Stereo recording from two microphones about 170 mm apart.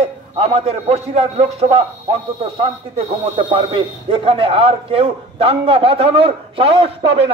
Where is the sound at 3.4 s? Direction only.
30° right (ahead or behind).